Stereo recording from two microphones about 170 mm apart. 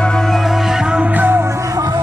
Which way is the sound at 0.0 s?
5° left (ahead or behind).